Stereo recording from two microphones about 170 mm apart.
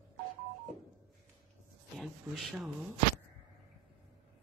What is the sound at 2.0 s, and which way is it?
Speech, centre (ahead or behind).